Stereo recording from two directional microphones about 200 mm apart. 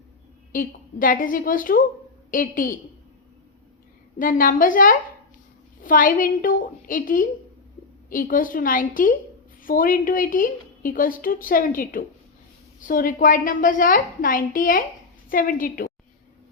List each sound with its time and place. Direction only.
0.5 s a woman's voice: 45° left (ahead or behind)
4.2 s a woman's voice: 45° left (ahead or behind)